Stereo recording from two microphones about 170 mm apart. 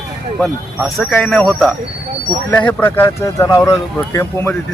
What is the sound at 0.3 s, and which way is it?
Speech, centre (ahead or behind).